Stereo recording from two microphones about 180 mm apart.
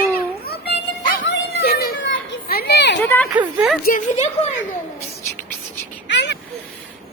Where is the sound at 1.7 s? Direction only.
55° left (ahead or behind); by 2.4 s 85° left.